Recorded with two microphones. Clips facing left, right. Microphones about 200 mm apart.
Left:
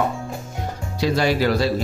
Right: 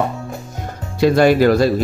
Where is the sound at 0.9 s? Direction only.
55° right (ahead or behind).